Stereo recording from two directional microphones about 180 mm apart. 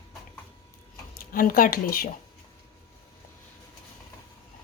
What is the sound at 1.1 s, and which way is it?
Speech, 50° left (ahead or behind).